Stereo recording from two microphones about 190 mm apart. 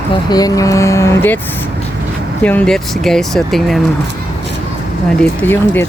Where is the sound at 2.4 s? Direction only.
10° left (ahead or behind).